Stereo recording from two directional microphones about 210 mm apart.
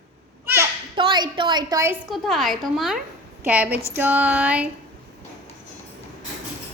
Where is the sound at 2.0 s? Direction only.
Centre (ahead or behind).